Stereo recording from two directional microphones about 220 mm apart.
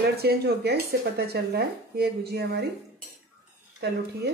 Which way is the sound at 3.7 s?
50° right (ahead or behind).